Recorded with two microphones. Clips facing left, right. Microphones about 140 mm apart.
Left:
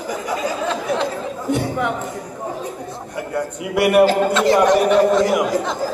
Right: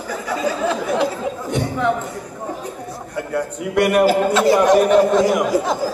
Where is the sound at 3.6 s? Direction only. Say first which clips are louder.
Left 1 dB; 5° left (ahead or behind).